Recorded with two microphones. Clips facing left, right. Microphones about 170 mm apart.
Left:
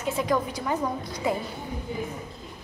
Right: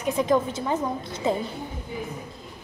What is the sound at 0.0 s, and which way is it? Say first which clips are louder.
A woman's voice: right 3 dB; 20° right (ahead or behind).